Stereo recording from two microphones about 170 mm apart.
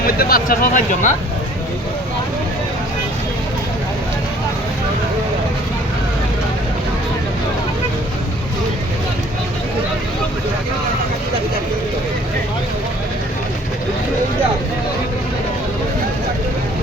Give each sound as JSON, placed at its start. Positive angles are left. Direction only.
{"t": 0.2, "sound": "speech", "side_deg": 60}